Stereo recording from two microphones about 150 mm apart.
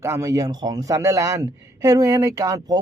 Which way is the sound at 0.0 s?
20° right (ahead or behind).